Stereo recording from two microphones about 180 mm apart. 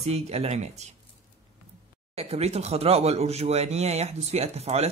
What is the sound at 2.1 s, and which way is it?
Speech, 35° right (ahead or behind).